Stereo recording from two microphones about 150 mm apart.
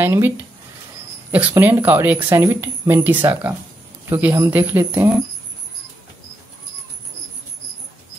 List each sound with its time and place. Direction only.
0.0 s speech: 15° right (ahead or behind)